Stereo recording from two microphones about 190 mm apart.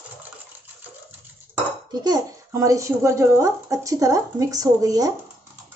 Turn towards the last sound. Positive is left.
turn(degrees=-20)  # may be behind; listen again after turning